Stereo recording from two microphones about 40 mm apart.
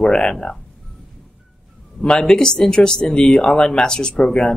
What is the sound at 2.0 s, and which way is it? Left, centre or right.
Speech, left.